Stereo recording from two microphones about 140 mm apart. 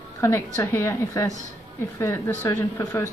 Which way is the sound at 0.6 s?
20° left (ahead or behind).